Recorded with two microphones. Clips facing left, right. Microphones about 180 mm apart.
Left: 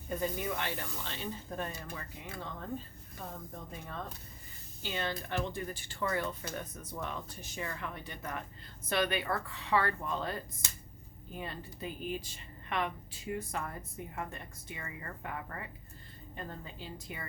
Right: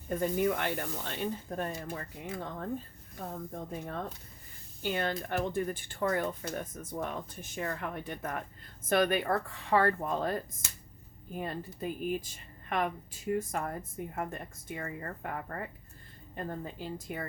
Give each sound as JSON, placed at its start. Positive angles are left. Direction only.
{"t": 0.2, "sound": "speech", "side_deg": -50}